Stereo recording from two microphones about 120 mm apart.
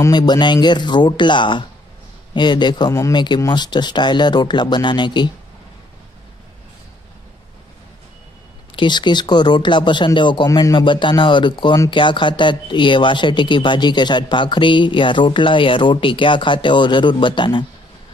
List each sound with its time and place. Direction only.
0.1 s speech: 35° left (ahead or behind)
8.7 s speech: 40° left (ahead or behind)